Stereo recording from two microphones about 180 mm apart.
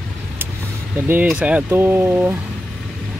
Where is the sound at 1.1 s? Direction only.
10° right (ahead or behind).